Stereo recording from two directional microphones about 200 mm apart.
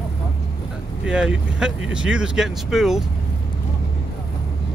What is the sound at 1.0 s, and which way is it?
Vehicle, 5° right (ahead or behind).